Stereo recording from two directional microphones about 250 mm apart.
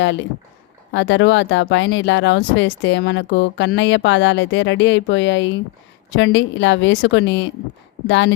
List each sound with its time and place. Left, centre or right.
0.0 s speech: left